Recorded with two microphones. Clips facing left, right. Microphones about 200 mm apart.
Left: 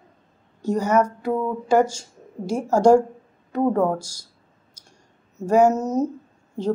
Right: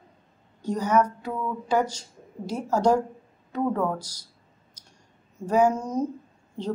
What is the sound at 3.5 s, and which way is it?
Speech, 40° left (ahead or behind).